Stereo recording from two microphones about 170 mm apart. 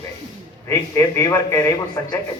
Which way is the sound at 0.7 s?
15° left (ahead or behind).